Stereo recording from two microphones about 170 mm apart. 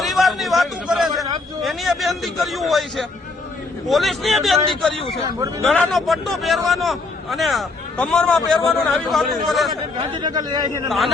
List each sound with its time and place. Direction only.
0.0 s a sound: centre (ahead or behind)
1.6 s a man's voice: centre (ahead or behind)
5.2 s speech: 20° right (ahead or behind)
5.6 s a man's voice: 5° left (ahead or behind)
10.0 s speech: 25° right (ahead or behind)
10.8 s a man's voice: centre (ahead or behind)